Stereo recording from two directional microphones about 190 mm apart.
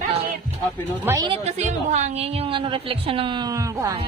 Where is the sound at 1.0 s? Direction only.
15° right (ahead or behind).